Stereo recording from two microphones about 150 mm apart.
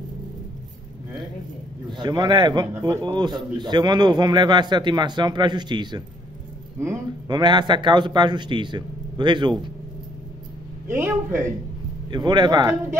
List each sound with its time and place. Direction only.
1.9 s a man's voice: 30° right (ahead or behind)
7.2 s speech: 30° right (ahead or behind)
10.9 s speech: 15° right (ahead or behind)
12.1 s a man's voice: 30° right (ahead or behind)